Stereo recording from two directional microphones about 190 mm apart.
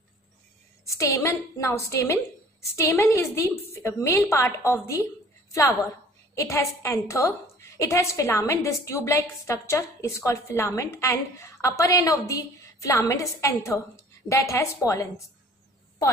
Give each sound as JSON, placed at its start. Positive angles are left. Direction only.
{"t": 0.8, "sound": "a woman's voice", "side_deg": 15}
{"t": 6.3, "sound": "a woman's voice", "side_deg": 15}